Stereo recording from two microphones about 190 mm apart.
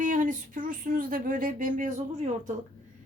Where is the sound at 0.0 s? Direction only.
45° right (ahead or behind).